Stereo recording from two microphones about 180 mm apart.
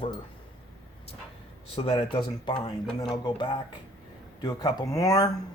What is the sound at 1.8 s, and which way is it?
Speech, 30° left (ahead or behind).